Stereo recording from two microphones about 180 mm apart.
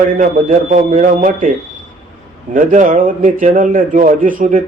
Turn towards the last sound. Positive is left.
turn(degrees=-50)  # may be behind; listen again after turning